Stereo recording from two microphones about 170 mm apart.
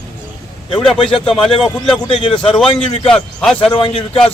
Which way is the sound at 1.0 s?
Centre (ahead or behind).